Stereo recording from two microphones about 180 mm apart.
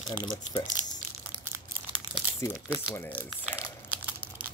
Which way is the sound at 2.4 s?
15° left (ahead or behind).